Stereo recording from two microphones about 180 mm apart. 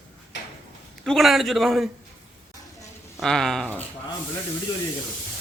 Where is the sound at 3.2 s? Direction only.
5° left (ahead or behind).